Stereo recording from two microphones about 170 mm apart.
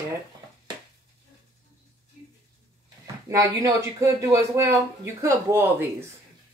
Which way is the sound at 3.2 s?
20° right (ahead or behind).